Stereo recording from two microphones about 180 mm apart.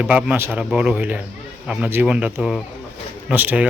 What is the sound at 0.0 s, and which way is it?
Speech, 5° right (ahead or behind).